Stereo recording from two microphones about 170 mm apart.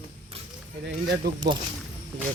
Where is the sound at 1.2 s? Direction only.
70° right (ahead or behind).